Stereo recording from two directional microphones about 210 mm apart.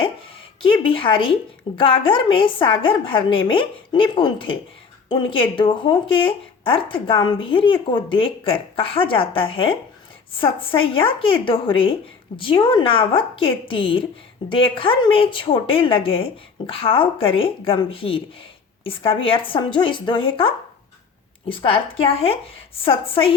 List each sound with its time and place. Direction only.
0.6 s speech: 25° left (ahead or behind)
21.5 s speech: 25° left (ahead or behind)